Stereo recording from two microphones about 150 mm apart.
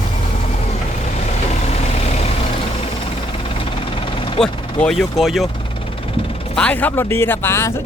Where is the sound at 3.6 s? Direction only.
35° left (ahead or behind).